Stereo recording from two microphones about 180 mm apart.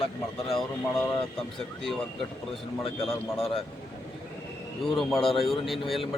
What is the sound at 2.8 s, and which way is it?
Speech, 30° left (ahead or behind).